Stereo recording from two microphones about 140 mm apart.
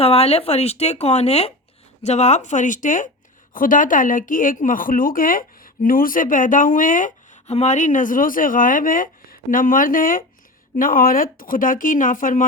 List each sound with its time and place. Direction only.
0.0 s speech: 45° left (ahead or behind); by 12.5 s 75° left (ahead or behind)